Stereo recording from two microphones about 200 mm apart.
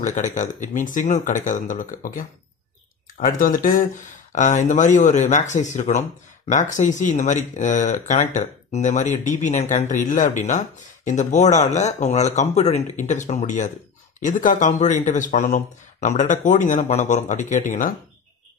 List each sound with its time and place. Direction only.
0.0 s speech: 35° left (ahead or behind)